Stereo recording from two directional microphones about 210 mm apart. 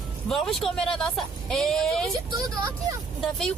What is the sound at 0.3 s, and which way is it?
Speech, centre (ahead or behind).